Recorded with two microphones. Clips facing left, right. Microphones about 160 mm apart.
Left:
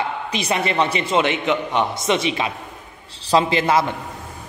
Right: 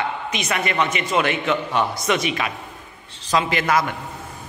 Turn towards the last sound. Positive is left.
turn(degrees=25)  # may be behind; listen again after turning